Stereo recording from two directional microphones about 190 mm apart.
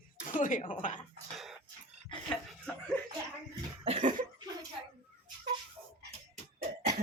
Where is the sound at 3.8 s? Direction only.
35° right (ahead or behind).